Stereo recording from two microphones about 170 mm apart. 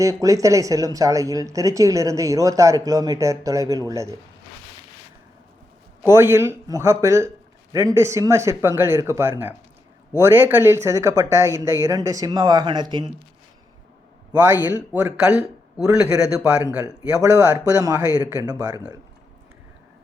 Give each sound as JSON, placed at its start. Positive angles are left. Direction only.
{"t": 0.0, "sound": "speech", "side_deg": -20}
{"t": 6.1, "sound": "speech", "side_deg": -15}
{"t": 14.3, "sound": "speech", "side_deg": -10}
{"t": 17.2, "sound": "speech", "side_deg": -15}